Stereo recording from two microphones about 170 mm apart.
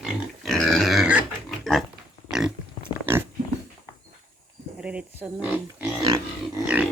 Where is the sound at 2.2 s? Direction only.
5° right (ahead or behind).